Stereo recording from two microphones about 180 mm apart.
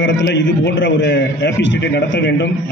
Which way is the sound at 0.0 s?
75° left (ahead or behind).